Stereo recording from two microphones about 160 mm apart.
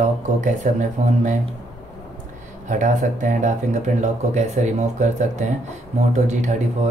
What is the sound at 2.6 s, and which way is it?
Speech, 50° right (ahead or behind).